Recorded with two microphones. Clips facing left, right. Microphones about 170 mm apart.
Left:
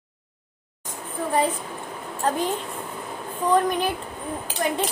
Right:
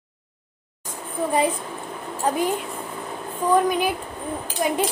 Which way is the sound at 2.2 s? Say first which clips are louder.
Right 2 dB; 10° right (ahead or behind).